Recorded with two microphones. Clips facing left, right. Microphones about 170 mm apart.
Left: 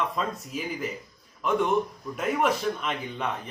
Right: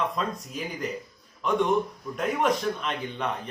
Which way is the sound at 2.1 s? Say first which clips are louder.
Even; 5° left (ahead or behind).